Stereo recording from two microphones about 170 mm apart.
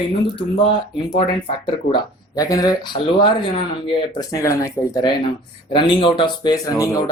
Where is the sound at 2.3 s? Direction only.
20° left (ahead or behind).